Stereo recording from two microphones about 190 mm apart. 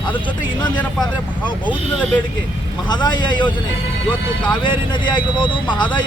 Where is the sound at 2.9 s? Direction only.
20° left (ahead or behind).